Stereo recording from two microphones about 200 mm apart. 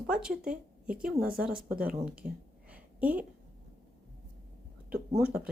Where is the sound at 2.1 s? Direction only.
5° right (ahead or behind).